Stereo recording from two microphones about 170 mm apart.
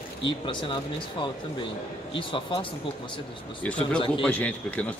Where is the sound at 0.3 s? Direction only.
30° left (ahead or behind).